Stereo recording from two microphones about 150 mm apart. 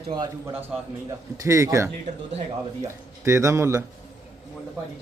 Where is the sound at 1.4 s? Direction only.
20° right (ahead or behind).